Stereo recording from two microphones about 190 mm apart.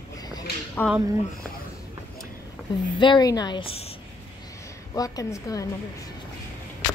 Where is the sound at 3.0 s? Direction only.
20° left (ahead or behind).